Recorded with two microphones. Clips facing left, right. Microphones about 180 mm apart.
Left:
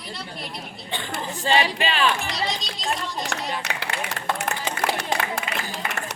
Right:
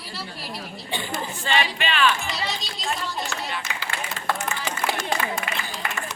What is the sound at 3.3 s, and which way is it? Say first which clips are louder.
Speech: left 2 dB; 65° left (ahead or behind).